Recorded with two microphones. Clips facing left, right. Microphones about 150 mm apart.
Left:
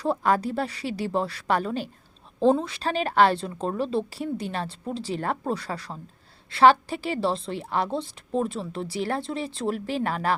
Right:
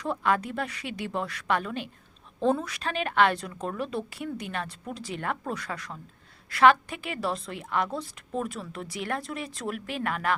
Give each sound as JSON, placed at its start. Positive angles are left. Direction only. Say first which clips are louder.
{"t": 0.0, "sound": "a woman's voice", "louder": "left 4 dB", "side_deg": 35}